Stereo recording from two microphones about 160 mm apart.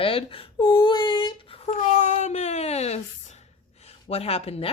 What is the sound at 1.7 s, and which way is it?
Speech, 50° left (ahead or behind).